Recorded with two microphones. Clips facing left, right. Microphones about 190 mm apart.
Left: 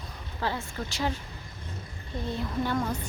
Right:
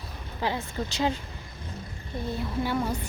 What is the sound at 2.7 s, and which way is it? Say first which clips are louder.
Speech: right 1 dB; 10° right (ahead or behind).